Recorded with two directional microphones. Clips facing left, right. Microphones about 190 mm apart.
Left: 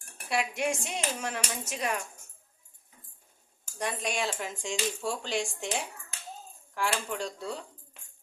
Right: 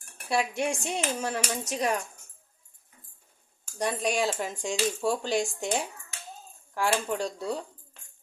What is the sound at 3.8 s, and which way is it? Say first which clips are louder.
Speech: right 5 dB; 35° right (ahead or behind).